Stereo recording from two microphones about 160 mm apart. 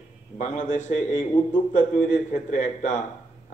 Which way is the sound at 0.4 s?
50° left (ahead or behind).